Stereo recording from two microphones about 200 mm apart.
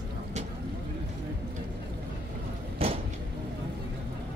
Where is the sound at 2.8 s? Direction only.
30° right (ahead or behind).